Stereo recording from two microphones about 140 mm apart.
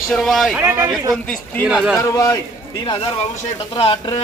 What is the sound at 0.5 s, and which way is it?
Speech, 15° right (ahead or behind).